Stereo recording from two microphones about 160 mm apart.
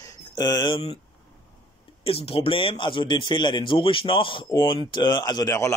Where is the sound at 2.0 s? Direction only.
35° left (ahead or behind); by 5.7 s 20° left (ahead or behind).